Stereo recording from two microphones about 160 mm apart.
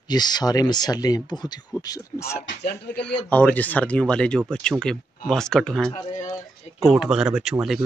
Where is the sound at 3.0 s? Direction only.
10° left (ahead or behind).